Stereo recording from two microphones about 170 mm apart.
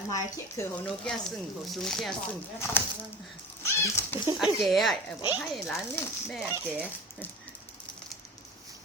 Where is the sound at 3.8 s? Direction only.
15° left (ahead or behind).